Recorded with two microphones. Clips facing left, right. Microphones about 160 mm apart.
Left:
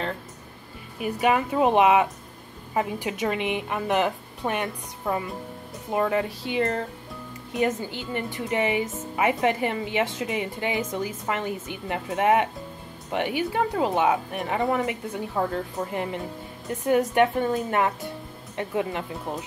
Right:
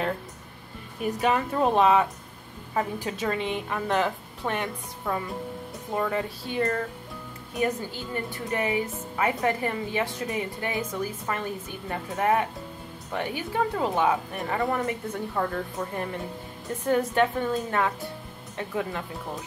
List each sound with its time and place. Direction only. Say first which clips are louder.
0.9 s a woman's voice: left 2 dB; 5° left (ahead or behind)